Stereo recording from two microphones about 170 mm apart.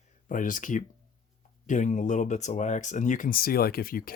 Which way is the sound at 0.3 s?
50° left (ahead or behind).